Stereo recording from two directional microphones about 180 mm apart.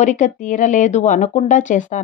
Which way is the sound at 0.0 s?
45° left (ahead or behind).